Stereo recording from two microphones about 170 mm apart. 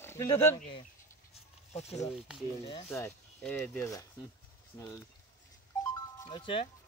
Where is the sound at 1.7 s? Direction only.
40° left (ahead or behind).